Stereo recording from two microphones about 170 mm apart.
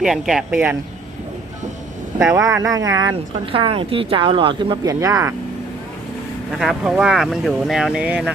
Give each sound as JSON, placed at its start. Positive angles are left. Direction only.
{"t": 0.0, "sound": "speech", "side_deg": -5}
{"t": 2.3, "sound": "speech", "side_deg": -20}
{"t": 6.5, "sound": "speech", "side_deg": 0}